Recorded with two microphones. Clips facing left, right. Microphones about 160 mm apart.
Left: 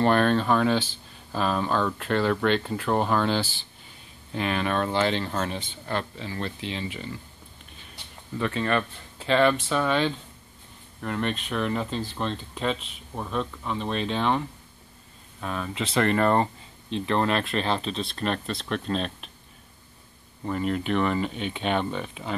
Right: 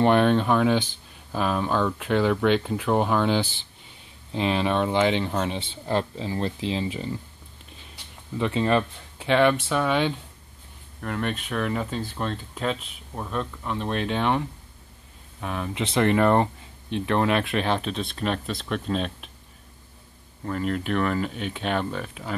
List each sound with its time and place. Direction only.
0.0 s speech: 15° right (ahead or behind)
5.6 s speech: 30° right (ahead or behind)
8.4 s speech: 20° right (ahead or behind)
9.2 s speech: 10° right (ahead or behind)
15.4 s speech: 15° right (ahead or behind)
20.4 s speech: 5° left (ahead or behind)